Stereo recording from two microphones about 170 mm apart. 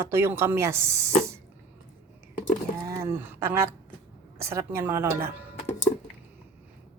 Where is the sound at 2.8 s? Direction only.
15° right (ahead or behind).